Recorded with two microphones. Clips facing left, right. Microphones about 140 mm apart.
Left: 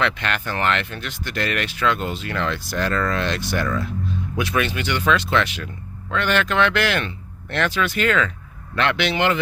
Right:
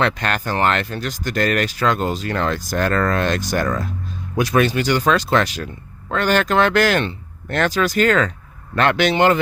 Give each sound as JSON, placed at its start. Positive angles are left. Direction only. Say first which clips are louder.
{"t": 0.0, "sound": "speech", "louder": "right 3 dB", "side_deg": -40}